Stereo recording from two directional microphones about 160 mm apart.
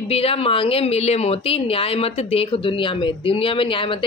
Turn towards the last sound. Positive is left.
turn(degrees=35)  # may be behind; listen again after turning